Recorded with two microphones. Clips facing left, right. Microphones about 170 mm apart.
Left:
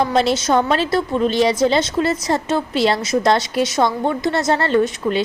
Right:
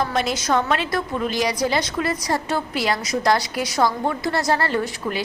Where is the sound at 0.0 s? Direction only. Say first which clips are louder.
Left 6 dB; 30° left (ahead or behind).